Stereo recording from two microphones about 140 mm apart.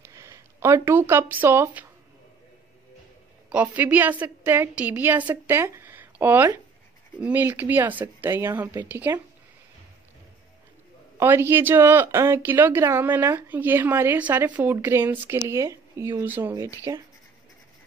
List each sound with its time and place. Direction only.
0.1 s speech: 20° right (ahead or behind)
3.4 s speech: 10° right (ahead or behind)
11.1 s speech: 20° right (ahead or behind)